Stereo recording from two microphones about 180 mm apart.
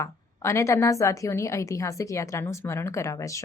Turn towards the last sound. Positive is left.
turn(degrees=15)  # may be behind; listen again after turning